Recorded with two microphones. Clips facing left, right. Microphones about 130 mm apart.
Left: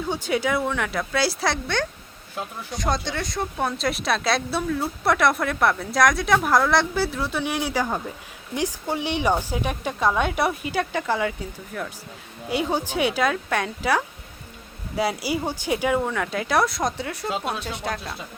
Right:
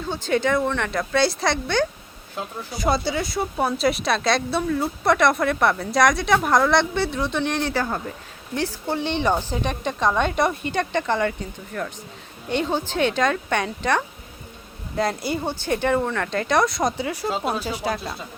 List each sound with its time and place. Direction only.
0.1 s speech: 10° left (ahead or behind)